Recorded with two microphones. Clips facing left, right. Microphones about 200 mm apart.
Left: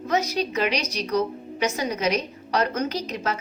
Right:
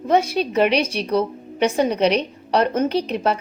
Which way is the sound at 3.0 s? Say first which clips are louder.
Right 7 dB; 60° right (ahead or behind).